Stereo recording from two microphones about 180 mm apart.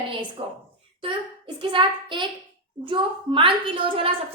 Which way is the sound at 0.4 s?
30° right (ahead or behind).